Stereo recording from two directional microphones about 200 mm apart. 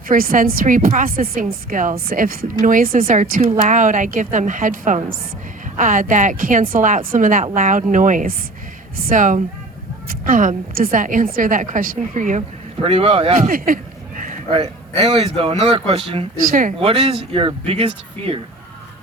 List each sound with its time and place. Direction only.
0.1 s a woman's voice: 45° right (ahead or behind)
12.8 s a man's voice: 30° right (ahead or behind)
14.5 s a man's voice: 30° right (ahead or behind)
16.5 s a woman's voice: 45° right (ahead or behind)
16.8 s a man's voice: 30° right (ahead or behind)